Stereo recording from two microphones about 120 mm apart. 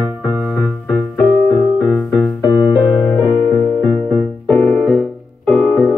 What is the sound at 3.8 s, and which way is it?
Music, 15° left (ahead or behind).